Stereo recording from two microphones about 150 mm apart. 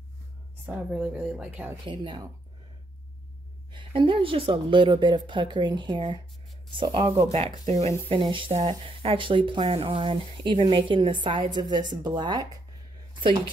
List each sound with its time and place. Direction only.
0.7 s speech: 10° right (ahead or behind)
1.9 s speech: 30° right (ahead or behind)
3.7 s speech: 35° right (ahead or behind)
7.5 s speech: 50° right (ahead or behind)
8.1 s speech: 35° right (ahead or behind)
13.1 s a sound: 35° right (ahead or behind)